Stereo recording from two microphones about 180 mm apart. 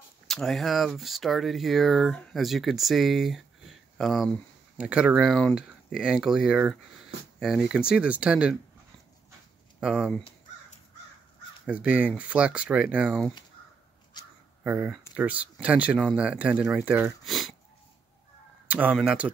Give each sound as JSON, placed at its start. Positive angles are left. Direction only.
{"t": 0.3, "sound": "speech", "side_deg": 0}
{"t": 9.8, "sound": "speech", "side_deg": -5}
{"t": 11.6, "sound": "speech", "side_deg": -5}
{"t": 14.2, "sound": "a sound", "side_deg": 20}
{"t": 14.6, "sound": "speech", "side_deg": -10}
{"t": 17.2, "sound": "sniff", "side_deg": 0}
{"t": 18.7, "sound": "speech", "side_deg": -10}